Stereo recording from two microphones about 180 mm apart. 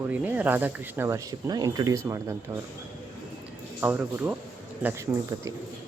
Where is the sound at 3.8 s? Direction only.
10° right (ahead or behind).